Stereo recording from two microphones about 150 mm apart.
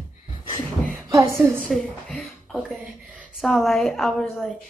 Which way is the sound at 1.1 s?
20° right (ahead or behind).